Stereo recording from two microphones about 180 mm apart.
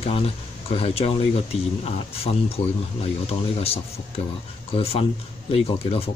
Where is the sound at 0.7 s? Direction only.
35° left (ahead or behind).